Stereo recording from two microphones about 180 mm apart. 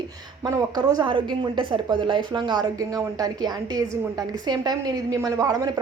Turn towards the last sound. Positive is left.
turn(degrees=-20)  # may be behind; listen again after turning